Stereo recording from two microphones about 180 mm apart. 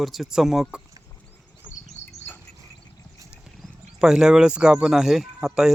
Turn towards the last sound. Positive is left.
turn(degrees=-5)  # may be behind; listen again after turning